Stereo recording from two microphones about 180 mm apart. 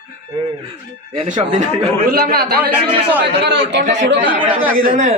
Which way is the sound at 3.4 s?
70° right (ahead or behind).